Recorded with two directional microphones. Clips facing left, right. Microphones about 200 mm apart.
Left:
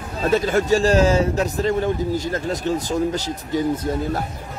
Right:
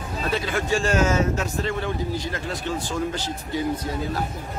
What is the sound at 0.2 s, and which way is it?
A man's voice, 45° left (ahead or behind).